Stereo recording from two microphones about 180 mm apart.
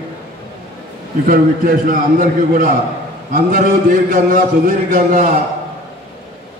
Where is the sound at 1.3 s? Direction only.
50° right (ahead or behind).